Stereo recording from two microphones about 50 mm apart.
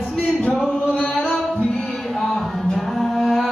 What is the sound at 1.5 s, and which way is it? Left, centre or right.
Music, centre.